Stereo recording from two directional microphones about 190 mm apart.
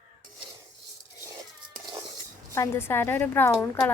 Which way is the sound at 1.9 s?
20° right (ahead or behind).